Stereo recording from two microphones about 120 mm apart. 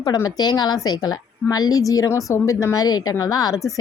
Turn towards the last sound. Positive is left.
turn(degrees=30)  # may be behind; listen again after turning